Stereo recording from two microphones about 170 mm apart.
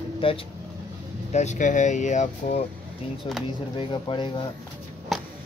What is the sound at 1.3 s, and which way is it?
Speech, 45° left (ahead or behind).